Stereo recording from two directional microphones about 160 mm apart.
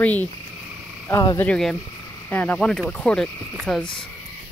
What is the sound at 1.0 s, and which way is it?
Speech, 20° left (ahead or behind).